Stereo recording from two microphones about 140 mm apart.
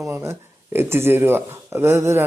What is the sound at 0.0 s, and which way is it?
Speech, 20° right (ahead or behind).